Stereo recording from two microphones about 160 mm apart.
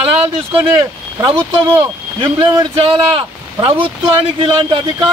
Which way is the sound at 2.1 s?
30° right (ahead or behind).